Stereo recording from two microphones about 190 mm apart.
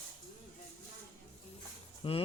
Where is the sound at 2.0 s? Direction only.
30° left (ahead or behind).